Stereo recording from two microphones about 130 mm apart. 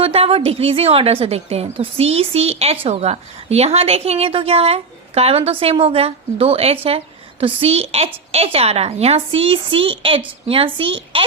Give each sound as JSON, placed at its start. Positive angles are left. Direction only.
{"t": 0.0, "sound": "a woman's voice", "side_deg": -50}